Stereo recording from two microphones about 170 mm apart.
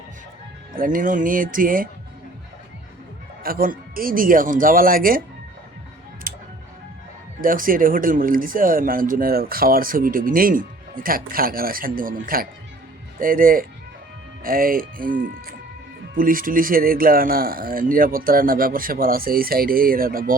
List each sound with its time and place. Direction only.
0.8 s speech: 55° right (ahead or behind)
3.4 s speech: 55° right (ahead or behind)
6.3 s music: 55° right (ahead or behind)
7.4 s speech: 55° right (ahead or behind)